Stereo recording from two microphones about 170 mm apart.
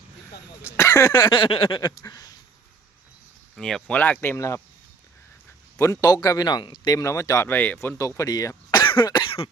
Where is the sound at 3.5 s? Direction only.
5° left (ahead or behind).